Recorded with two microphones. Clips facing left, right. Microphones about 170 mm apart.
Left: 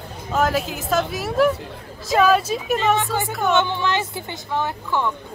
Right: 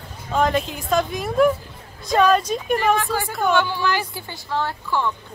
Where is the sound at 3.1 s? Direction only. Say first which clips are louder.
Even; 20° left (ahead or behind).